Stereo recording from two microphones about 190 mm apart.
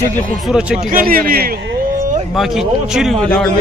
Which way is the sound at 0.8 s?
45° right (ahead or behind).